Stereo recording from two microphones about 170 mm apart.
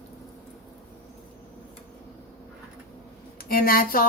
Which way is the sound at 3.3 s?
60° left (ahead or behind).